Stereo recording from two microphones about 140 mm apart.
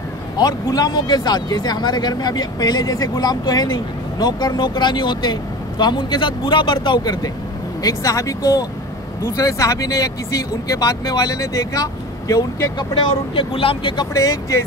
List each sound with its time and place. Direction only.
0.4 s speech: 25° left (ahead or behind)
13.3 s speech: 40° left (ahead or behind)
14.1 s speech: 25° left (ahead or behind)